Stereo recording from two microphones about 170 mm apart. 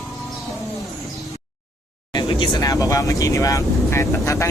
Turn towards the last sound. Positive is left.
turn(degrees=15)  # may be behind; listen again after turning